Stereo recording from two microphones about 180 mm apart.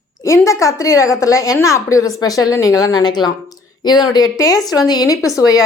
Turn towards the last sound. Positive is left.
turn(degrees=20)  # may be behind; listen again after turning